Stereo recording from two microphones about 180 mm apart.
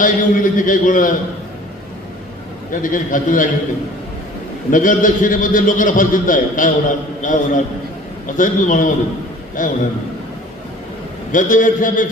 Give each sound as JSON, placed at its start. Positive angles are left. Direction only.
{"t": 0.0, "sound": "a man's voice", "side_deg": 45}
{"t": 2.8, "sound": "a man's voice", "side_deg": 50}
{"t": 4.7, "sound": "a man's voice", "side_deg": 45}
{"t": 11.3, "sound": "a man's voice", "side_deg": 45}